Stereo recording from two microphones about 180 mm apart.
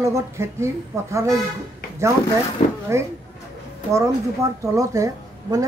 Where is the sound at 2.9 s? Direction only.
15° right (ahead or behind).